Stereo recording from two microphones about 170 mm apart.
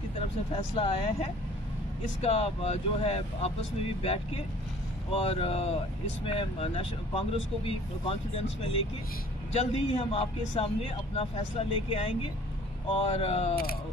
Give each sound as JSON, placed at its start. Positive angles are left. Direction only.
{"t": 0.6, "sound": "speech", "side_deg": 35}
{"t": 5.1, "sound": "speech", "side_deg": 35}